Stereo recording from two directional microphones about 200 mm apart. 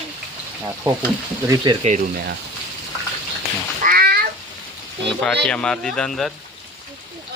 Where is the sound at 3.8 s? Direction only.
45° right (ahead or behind).